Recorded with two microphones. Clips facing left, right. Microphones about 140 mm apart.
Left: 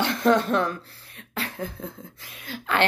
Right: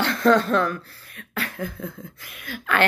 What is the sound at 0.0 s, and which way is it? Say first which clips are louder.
A woman's voice: right 2 dB; 20° left (ahead or behind).